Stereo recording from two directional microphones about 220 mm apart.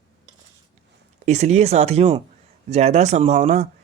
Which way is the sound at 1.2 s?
30° right (ahead or behind).